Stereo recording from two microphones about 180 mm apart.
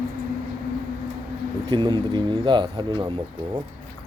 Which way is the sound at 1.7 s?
25° right (ahead or behind).